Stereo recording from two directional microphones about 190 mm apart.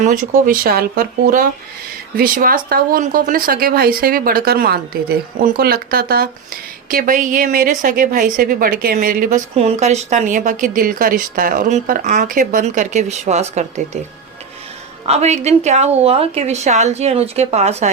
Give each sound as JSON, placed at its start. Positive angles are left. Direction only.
{"t": 0.0, "sound": "speech", "side_deg": -45}
{"t": 9.6, "sound": "a woman's voice", "side_deg": -35}
{"t": 15.0, "sound": "a woman's voice", "side_deg": -35}